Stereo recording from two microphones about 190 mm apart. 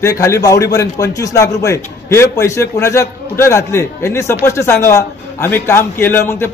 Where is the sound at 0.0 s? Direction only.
15° left (ahead or behind).